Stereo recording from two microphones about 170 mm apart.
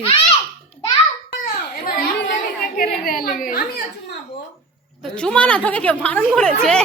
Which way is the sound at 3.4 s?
60° left (ahead or behind).